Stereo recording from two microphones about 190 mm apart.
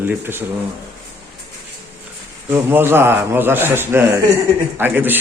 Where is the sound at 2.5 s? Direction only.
10° right (ahead or behind).